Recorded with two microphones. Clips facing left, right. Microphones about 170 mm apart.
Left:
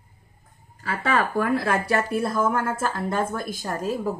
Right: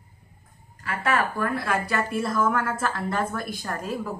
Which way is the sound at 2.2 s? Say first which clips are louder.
Left 1 dB; 30° left (ahead or behind).